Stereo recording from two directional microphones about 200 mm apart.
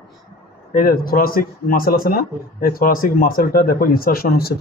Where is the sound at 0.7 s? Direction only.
45° left (ahead or behind).